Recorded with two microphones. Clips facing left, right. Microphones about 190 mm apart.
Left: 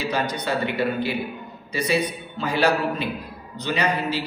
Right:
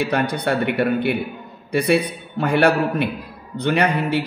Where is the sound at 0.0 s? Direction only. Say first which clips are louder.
Right 5 dB; 55° right (ahead or behind).